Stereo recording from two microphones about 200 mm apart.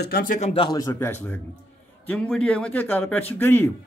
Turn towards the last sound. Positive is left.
turn(degrees=10)  # may be behind; listen again after turning